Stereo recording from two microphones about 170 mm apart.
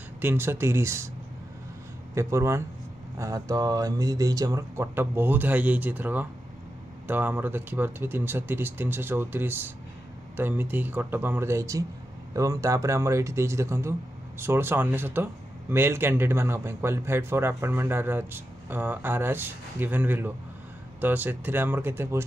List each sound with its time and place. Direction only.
0.2 s a man's voice: 15° right (ahead or behind)
2.1 s a man's voice: 15° right (ahead or behind)